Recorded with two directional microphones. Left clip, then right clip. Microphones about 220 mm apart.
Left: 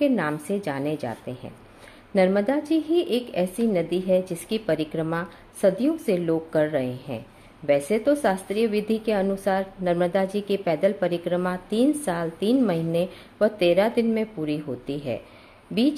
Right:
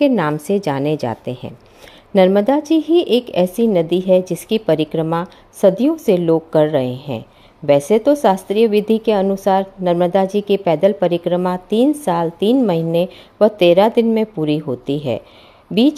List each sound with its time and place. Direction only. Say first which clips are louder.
0.0 s a woman's voice: right 8 dB; 35° right (ahead or behind)